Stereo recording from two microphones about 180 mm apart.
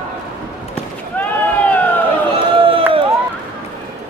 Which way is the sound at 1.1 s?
10° left (ahead or behind).